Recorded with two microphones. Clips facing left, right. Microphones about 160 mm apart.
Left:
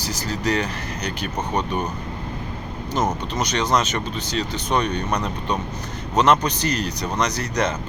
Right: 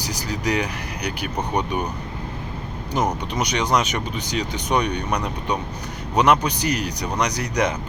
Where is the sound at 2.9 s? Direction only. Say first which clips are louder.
Even; 15° right (ahead or behind).